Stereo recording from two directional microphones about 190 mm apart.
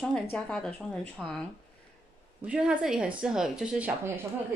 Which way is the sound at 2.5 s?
5° right (ahead or behind).